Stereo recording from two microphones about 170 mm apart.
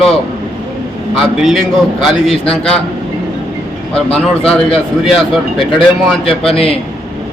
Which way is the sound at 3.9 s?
5° left (ahead or behind).